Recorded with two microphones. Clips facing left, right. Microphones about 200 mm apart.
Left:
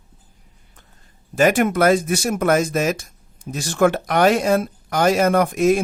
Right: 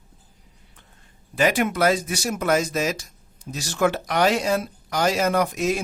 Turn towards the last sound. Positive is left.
turn(degrees=55)  # may be behind; listen again after turning